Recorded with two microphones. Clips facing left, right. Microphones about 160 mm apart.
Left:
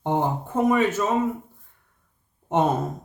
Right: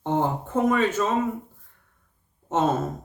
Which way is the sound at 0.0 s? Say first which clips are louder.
Even; 15° left (ahead or behind).